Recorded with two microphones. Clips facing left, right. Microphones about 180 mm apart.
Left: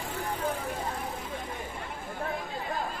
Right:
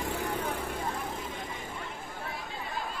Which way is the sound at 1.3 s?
45° left (ahead or behind).